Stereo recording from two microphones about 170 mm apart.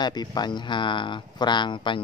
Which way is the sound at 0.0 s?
25° left (ahead or behind).